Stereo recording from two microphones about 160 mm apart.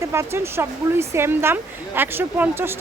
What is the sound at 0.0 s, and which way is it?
Speech, 15° right (ahead or behind).